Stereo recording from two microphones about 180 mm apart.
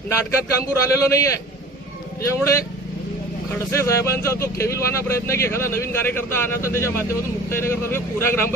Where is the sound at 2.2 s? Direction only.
15° left (ahead or behind).